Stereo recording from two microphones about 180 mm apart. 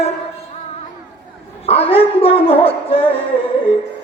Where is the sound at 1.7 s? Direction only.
35° left (ahead or behind).